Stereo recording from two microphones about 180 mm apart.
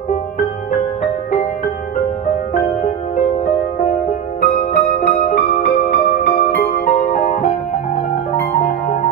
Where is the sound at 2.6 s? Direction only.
45° left (ahead or behind).